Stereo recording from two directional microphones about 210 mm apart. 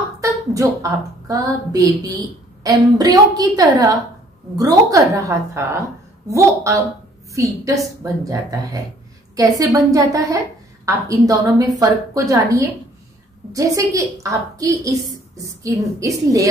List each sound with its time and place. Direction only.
0.2 s a woman's voice: 15° right (ahead or behind)